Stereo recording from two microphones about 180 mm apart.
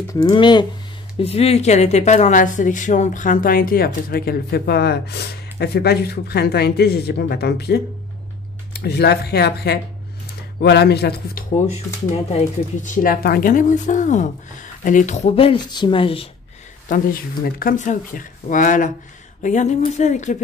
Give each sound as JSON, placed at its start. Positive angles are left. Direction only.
{"t": 0.1, "sound": "speech", "side_deg": 20}
{"t": 1.2, "sound": "speech", "side_deg": 35}
{"t": 12.3, "sound": "speech", "side_deg": 40}
{"t": 16.9, "sound": "speech", "side_deg": 55}